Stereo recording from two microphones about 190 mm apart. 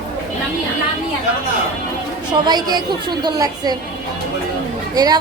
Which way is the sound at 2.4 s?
20° right (ahead or behind).